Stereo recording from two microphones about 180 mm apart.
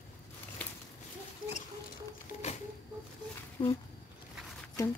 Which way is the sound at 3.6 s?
25° left (ahead or behind).